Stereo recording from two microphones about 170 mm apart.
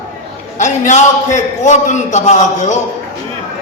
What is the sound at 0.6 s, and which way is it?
A man's voice, 45° left (ahead or behind).